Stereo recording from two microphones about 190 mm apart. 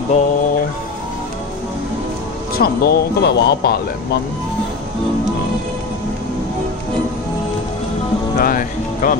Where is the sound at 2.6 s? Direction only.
55° left (ahead or behind).